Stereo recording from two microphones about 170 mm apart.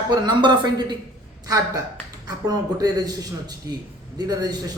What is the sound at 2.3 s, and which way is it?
Speech, 20° right (ahead or behind).